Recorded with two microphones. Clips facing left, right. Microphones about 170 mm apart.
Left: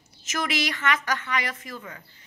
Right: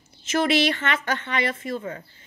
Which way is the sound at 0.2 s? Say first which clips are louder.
Right 7 dB; 30° right (ahead or behind).